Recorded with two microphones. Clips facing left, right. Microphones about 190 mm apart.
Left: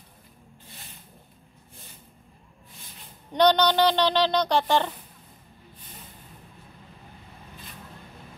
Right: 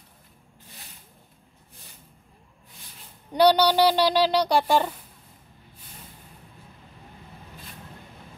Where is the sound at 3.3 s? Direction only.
10° right (ahead or behind).